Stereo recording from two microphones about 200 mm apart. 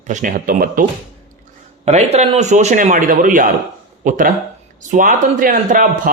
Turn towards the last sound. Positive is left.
turn(degrees=-45)  # may be behind; listen again after turning